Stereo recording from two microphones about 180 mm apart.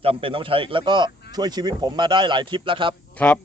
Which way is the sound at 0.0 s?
30° right (ahead or behind).